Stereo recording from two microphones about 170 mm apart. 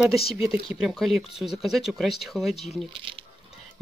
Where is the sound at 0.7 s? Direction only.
5° right (ahead or behind).